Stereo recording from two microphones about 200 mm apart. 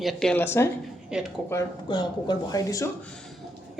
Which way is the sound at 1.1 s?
5° right (ahead or behind).